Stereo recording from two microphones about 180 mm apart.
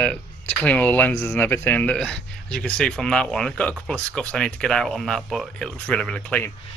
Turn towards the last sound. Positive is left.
turn(degrees=5)  # may be behind; listen again after turning